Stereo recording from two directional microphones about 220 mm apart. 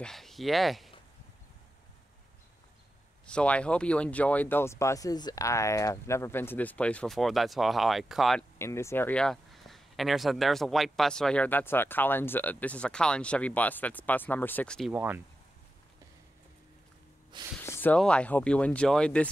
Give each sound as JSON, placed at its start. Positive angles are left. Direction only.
{"t": 0.0, "sound": "speech", "side_deg": 0}
{"t": 3.3, "sound": "speech", "side_deg": 5}
{"t": 8.5, "sound": "speech", "side_deg": 10}
{"t": 14.9, "sound": "speech", "side_deg": -10}
{"t": 17.3, "sound": "speech", "side_deg": -20}
{"t": 17.6, "sound": "speech", "side_deg": 10}